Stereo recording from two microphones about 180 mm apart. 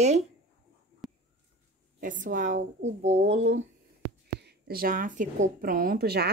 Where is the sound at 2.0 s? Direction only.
50° right (ahead or behind).